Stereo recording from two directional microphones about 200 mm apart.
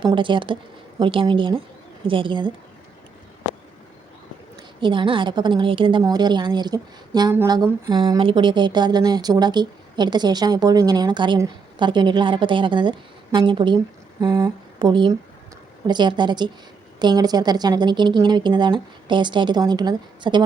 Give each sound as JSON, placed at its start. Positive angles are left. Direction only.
{"t": 0.0, "sound": "a woman's voice", "side_deg": -25}
{"t": 4.8, "sound": "a woman's voice", "side_deg": -25}
{"t": 14.2, "sound": "a sound", "side_deg": -20}
{"t": 15.9, "sound": "a woman's voice", "side_deg": -20}